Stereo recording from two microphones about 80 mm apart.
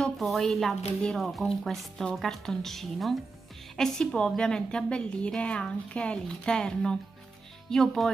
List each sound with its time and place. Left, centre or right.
0.0 s a woman's voice: centre